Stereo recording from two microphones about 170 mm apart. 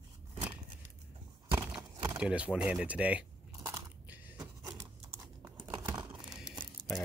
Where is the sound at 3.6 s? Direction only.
20° right (ahead or behind).